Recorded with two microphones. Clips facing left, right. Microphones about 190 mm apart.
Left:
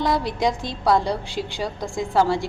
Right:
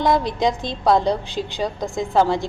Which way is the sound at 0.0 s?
20° right (ahead or behind).